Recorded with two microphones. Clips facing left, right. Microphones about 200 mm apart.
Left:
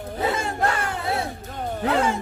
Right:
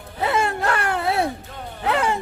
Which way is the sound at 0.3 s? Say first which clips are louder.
Right 3 dB; 65° right (ahead or behind).